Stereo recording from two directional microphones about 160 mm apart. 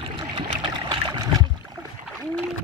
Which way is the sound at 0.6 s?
30° right (ahead or behind).